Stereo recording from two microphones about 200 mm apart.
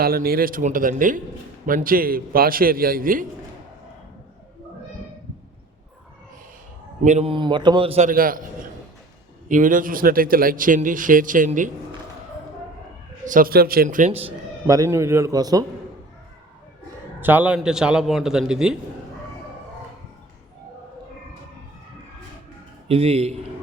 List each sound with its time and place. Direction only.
0.0 s a man's voice: 50° right (ahead or behind)
7.0 s speech: 35° right (ahead or behind)
9.5 s speech: 40° right (ahead or behind)
13.2 s speech: 45° right (ahead or behind)
14.7 s a man's voice: 15° right (ahead or behind)
17.2 s a man's voice: 10° right (ahead or behind)
22.9 s speech: 30° right (ahead or behind)